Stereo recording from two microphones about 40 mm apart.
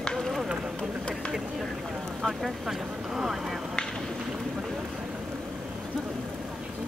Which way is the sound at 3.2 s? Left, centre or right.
Centre.